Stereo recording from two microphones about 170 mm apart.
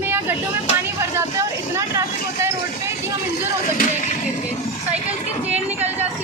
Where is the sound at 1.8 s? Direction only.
15° right (ahead or behind).